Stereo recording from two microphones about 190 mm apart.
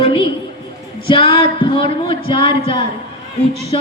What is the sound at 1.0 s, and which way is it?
A woman's voice, 25° left (ahead or behind).